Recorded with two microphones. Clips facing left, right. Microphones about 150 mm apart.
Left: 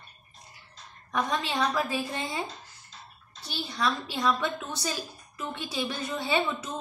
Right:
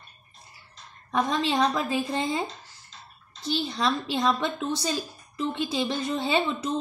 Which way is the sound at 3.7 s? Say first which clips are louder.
Left 1 dB; 25° right (ahead or behind).